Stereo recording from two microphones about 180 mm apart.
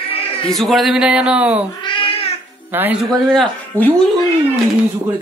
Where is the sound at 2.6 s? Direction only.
10° right (ahead or behind).